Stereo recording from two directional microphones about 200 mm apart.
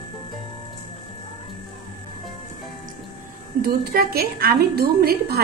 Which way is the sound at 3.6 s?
50° right (ahead or behind).